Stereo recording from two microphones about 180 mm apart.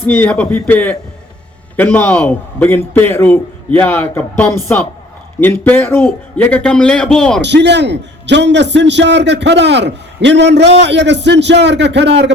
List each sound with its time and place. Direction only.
0.1 s a man's voice: 10° left (ahead or behind)
7.4 s a man's voice: 75° right (ahead or behind)